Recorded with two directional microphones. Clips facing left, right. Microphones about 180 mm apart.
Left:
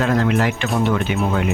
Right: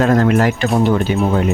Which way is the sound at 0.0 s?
45° right (ahead or behind).